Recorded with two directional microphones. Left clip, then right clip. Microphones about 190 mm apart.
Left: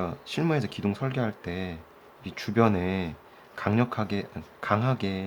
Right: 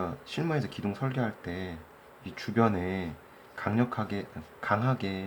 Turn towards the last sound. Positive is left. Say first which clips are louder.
# left 2 dB
turn(degrees=20)  # may be behind; listen again after turning